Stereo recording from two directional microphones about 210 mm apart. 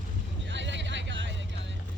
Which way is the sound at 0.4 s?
60° right (ahead or behind).